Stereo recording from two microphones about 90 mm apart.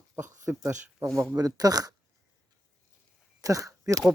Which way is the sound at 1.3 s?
45° right (ahead or behind).